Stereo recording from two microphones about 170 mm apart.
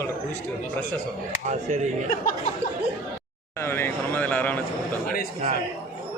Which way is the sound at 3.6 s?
15° left (ahead or behind).